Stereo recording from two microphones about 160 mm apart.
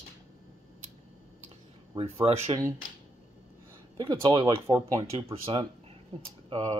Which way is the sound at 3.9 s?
30° right (ahead or behind).